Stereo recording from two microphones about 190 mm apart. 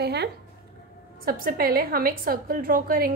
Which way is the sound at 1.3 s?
50° right (ahead or behind).